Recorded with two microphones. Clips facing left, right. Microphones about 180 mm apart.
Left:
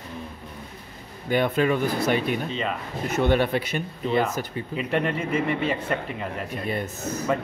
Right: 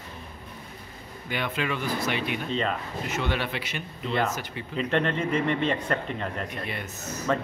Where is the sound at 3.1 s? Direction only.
45° left (ahead or behind).